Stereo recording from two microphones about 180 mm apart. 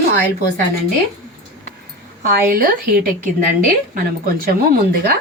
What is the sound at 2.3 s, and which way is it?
A woman's voice, 55° right (ahead or behind).